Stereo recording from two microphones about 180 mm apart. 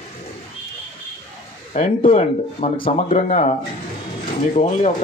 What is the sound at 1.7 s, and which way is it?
Speech, 30° left (ahead or behind).